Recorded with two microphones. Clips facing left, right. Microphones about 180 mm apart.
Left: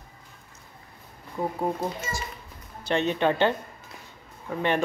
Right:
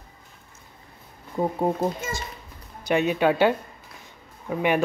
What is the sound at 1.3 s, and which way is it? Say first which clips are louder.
Speech: right 4 dB; 25° right (ahead or behind).